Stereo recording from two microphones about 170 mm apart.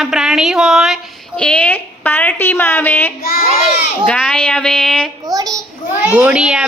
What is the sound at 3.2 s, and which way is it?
Speech, 60° left (ahead or behind).